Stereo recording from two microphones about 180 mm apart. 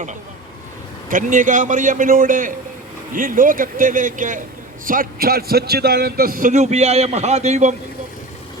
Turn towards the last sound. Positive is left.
turn(degrees=-40)  # may be behind; listen again after turning